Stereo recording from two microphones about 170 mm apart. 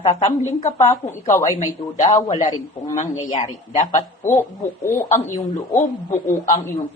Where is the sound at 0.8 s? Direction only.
15° left (ahead or behind).